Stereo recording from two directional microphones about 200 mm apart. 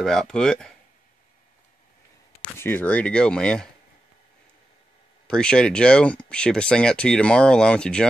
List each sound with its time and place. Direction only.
0.0 s speech: centre (ahead or behind)
2.4 s speech: 10° left (ahead or behind)
5.2 s speech: 5° left (ahead or behind)